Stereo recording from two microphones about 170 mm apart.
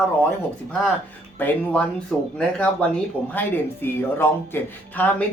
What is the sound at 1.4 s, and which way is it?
Speech, 10° left (ahead or behind).